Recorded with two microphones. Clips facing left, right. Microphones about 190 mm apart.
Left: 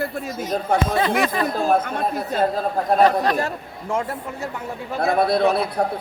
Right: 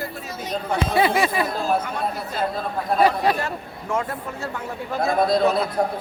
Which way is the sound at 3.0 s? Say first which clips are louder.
Left 1 dB; 10° right (ahead or behind).